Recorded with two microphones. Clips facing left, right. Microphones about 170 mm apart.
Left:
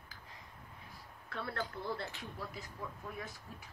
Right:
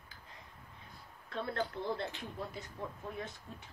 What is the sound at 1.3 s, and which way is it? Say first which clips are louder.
Speech: right 4 dB; 20° right (ahead or behind).